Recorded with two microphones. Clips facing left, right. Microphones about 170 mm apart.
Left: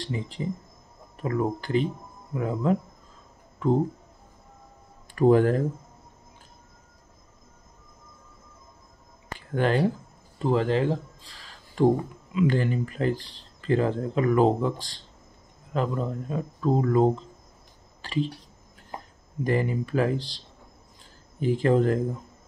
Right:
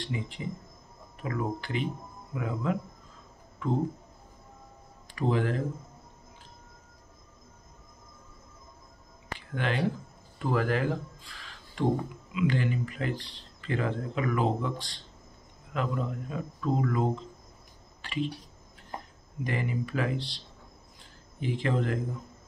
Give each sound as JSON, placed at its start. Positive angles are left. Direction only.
{"t": 0.0, "sound": "speech", "side_deg": 35}
{"t": 5.1, "sound": "speech", "side_deg": 45}
{"t": 9.6, "sound": "speech", "side_deg": 40}
{"t": 10.4, "sound": "speech", "side_deg": 25}
{"t": 18.0, "sound": "a sound", "side_deg": 35}
{"t": 19.4, "sound": "speech", "side_deg": 40}
{"t": 21.4, "sound": "speech", "side_deg": 40}